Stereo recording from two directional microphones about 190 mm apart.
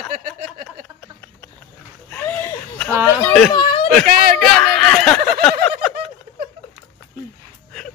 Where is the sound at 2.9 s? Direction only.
10° right (ahead or behind).